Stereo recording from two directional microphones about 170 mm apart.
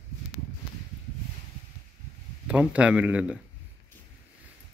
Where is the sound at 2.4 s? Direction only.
5° right (ahead or behind).